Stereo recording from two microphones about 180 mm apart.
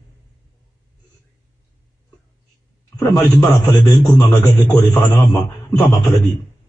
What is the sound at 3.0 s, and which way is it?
A man's voice, 20° left (ahead or behind).